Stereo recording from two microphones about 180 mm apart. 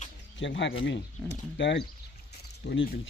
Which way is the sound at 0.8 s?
75° left (ahead or behind).